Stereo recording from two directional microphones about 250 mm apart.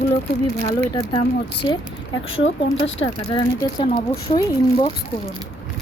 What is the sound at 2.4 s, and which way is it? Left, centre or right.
Speech, left.